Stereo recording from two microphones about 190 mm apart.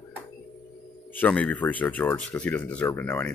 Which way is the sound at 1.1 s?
10° left (ahead or behind).